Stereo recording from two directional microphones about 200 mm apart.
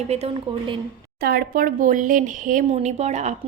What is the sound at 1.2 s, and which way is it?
A woman's voice, 50° right (ahead or behind).